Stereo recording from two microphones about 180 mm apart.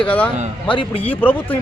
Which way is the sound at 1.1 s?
10° left (ahead or behind).